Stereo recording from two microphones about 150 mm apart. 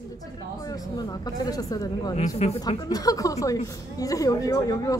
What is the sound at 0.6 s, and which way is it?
A woman's voice, 25° left (ahead or behind).